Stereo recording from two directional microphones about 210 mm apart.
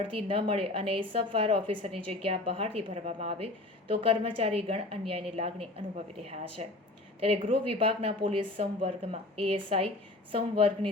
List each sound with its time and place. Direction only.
0.0 s a woman's voice: 25° right (ahead or behind)